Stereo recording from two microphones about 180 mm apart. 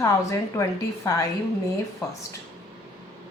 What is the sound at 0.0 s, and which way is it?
A woman's voice, 15° left (ahead or behind).